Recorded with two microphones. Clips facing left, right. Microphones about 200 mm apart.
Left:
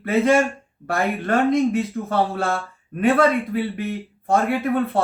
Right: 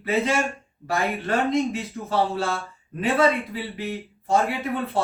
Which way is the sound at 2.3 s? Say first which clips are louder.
Left 3 dB; 50° left (ahead or behind).